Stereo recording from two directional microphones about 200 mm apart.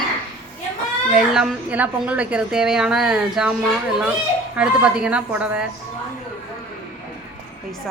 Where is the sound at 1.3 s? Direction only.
5° right (ahead or behind).